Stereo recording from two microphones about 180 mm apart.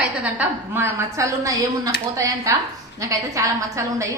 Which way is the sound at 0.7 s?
15° right (ahead or behind).